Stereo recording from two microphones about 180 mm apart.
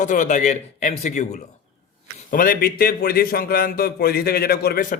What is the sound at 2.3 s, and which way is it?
A man's voice, 50° left (ahead or behind).